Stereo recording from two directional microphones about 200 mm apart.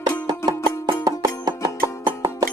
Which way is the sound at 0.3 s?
20° right (ahead or behind).